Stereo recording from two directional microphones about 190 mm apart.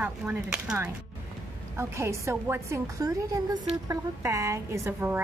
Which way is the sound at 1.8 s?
15° right (ahead or behind).